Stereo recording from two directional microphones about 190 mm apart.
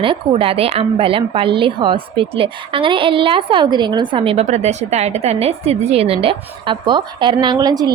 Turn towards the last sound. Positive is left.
turn(degrees=-20)  # may be behind; listen again after turning